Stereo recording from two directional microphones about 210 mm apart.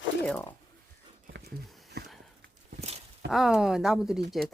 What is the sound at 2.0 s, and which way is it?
Sniff, 50° right (ahead or behind).